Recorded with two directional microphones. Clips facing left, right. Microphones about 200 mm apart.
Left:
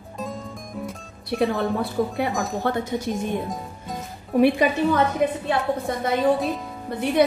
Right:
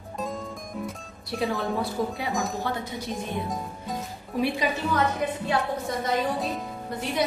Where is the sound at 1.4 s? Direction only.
55° left (ahead or behind).